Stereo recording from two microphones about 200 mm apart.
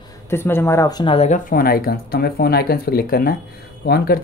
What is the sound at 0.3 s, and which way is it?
Speech, 10° left (ahead or behind).